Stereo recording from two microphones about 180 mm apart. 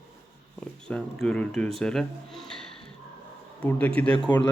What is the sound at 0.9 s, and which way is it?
Speech, 5° left (ahead or behind).